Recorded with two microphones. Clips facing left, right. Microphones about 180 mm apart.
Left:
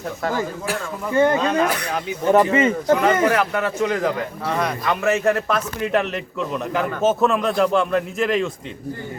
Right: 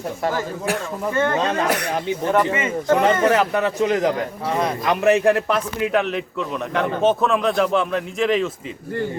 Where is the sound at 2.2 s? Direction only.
30° left (ahead or behind).